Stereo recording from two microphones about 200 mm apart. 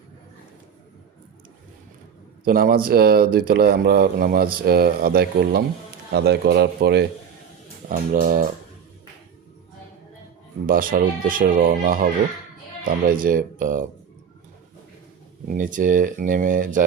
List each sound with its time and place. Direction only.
2.4 s a man's voice: 45° right (ahead or behind)
7.9 s speech: 40° right (ahead or behind)
10.7 s speech: 45° right (ahead or behind)
15.4 s speech: 40° right (ahead or behind)